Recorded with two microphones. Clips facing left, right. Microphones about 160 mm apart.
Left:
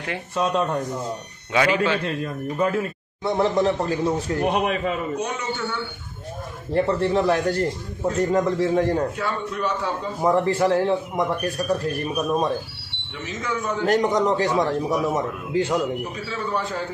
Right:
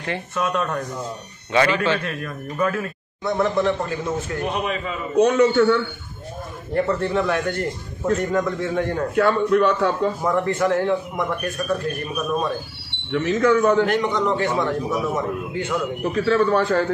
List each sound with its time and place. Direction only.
0.4 s a man's voice: 30° left (ahead or behind)
1.5 s a man's voice: 5° left (ahead or behind)
2.0 s a man's voice: 25° left (ahead or behind)
4.5 s a man's voice: 60° left (ahead or behind)
5.2 s a man's voice: 65° right (ahead or behind)
6.7 s a man's voice: 30° left (ahead or behind)
9.1 s a man's voice: 70° right (ahead or behind)
10.2 s a man's voice: 30° left (ahead or behind)
13.1 s a man's voice: 70° right (ahead or behind)
13.8 s a man's voice: 40° left (ahead or behind)
16.1 s a man's voice: 65° right (ahead or behind)